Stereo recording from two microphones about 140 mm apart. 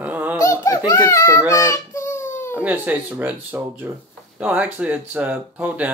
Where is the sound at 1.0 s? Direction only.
20° left (ahead or behind).